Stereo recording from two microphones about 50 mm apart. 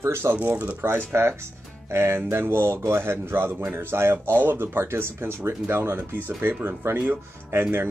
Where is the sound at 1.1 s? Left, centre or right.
Right.